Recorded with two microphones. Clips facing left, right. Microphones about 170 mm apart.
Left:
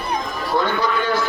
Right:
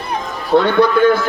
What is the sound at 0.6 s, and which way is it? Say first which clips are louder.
Speech: right 9 dB; 65° right (ahead or behind).